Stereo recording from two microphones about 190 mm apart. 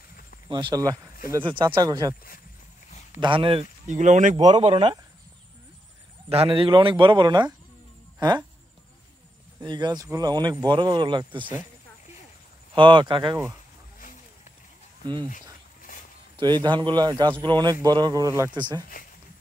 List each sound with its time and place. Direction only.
0.5 s speech: 25° right (ahead or behind)
3.2 s speech: 25° right (ahead or behind)
3.8 s speech: 40° right (ahead or behind)
4.5 s speech: 30° right (ahead or behind)
6.2 s speech: 30° right (ahead or behind)
9.6 s speech: 20° right (ahead or behind)
12.7 s speech: 25° right (ahead or behind)
15.9 s zipper: 45° left (ahead or behind)
16.3 s speech: 25° right (ahead or behind)